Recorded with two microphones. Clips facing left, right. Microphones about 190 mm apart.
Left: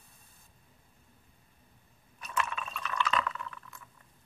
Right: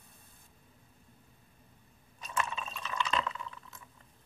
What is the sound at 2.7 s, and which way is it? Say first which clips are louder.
Liquid: left 2 dB; 15° right (ahead or behind).